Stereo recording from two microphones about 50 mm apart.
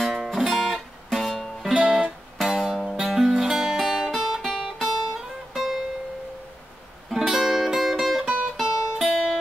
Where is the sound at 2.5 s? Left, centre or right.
Centre.